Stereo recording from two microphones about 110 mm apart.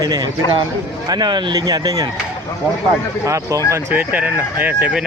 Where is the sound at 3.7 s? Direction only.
20° right (ahead or behind).